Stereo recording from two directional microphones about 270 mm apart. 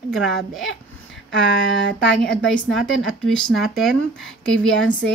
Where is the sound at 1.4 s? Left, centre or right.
Left.